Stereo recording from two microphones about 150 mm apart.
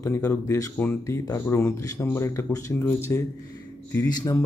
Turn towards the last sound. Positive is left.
turn(degrees=25)  # may be behind; listen again after turning